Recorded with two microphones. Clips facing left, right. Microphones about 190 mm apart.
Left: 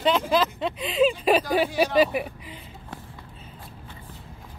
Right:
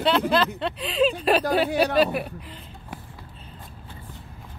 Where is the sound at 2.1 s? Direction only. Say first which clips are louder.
Even; 5° left (ahead or behind).